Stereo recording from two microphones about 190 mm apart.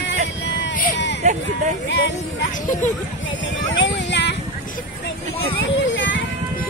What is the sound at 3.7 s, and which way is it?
Clip-clop, 70° left (ahead or behind).